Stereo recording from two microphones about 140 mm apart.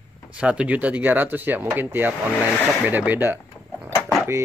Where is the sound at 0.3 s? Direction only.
10° right (ahead or behind).